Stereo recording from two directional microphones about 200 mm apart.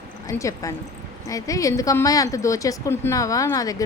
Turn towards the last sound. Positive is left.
turn(degrees=15)  # may be behind; listen again after turning